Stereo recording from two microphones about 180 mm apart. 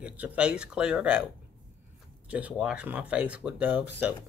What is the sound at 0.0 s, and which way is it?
Speech, 10° right (ahead or behind).